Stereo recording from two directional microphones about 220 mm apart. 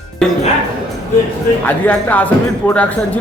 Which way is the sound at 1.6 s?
5° left (ahead or behind).